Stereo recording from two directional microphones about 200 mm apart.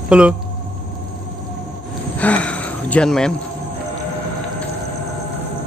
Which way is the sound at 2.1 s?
5° left (ahead or behind).